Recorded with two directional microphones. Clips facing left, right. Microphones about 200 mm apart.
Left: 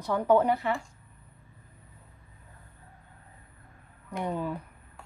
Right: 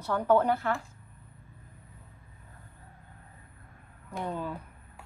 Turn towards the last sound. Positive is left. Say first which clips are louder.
# left 3 dB
turn(degrees=10)  # may be behind; listen again after turning